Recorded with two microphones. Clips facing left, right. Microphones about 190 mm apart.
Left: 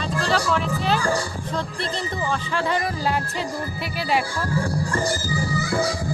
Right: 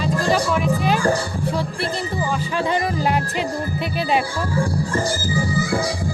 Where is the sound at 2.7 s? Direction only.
20° right (ahead or behind).